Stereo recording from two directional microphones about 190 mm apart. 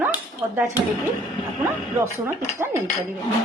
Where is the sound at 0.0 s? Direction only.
10° right (ahead or behind).